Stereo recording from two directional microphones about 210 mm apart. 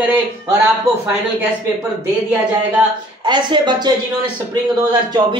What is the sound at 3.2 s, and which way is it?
Speech, 20° right (ahead or behind).